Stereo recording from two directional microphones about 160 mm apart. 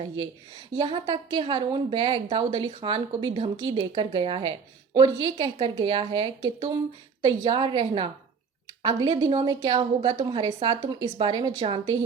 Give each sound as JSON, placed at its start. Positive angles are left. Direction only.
{"t": 0.8, "sound": "a woman's voice", "side_deg": -30}
{"t": 4.9, "sound": "a woman's voice", "side_deg": -25}